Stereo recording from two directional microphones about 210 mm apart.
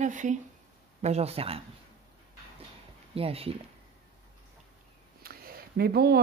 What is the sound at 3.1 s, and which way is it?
Speech, 25° right (ahead or behind).